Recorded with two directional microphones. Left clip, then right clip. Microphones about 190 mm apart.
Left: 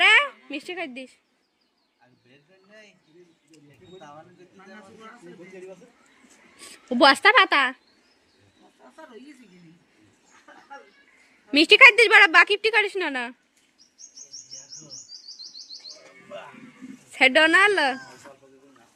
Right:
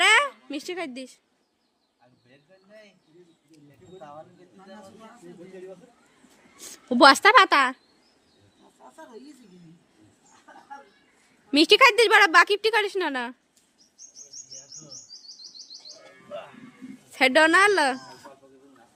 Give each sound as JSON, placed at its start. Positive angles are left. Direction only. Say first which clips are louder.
{"t": 0.0, "sound": "a sound", "louder": "left 2 dB", "side_deg": -15}
{"t": 6.6, "sound": "a woman's voice", "louder": "right 2 dB", "side_deg": -20}
{"t": 11.5, "sound": "a woman's voice", "louder": "left 4 dB", "side_deg": -5}
{"t": 17.1, "sound": "a woman's voice", "louder": "left 1 dB", "side_deg": -10}